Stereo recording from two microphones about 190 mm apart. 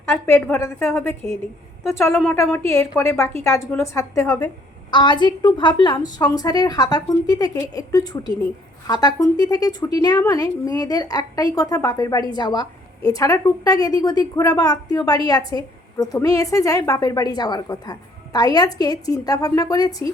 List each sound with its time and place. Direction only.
0.0 s a woman's voice: 10° left (ahead or behind)
4.9 s a woman's voice: 25° left (ahead or behind)